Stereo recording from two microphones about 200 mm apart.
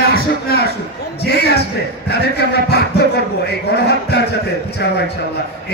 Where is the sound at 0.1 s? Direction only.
50° left (ahead or behind).